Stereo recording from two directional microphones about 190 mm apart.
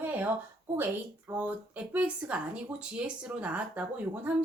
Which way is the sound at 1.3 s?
10° right (ahead or behind).